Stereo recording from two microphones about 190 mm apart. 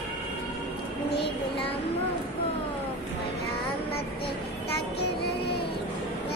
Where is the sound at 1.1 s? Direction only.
60° left (ahead or behind).